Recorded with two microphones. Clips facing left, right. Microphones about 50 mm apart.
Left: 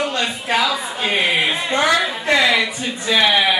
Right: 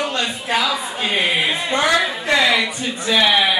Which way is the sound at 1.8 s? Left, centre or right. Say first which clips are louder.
Left 1 dB; centre.